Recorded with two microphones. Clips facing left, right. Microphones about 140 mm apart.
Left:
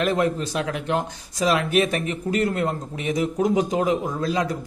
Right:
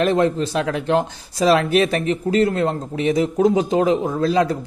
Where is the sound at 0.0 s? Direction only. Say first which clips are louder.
Right 4 dB; 30° right (ahead or behind).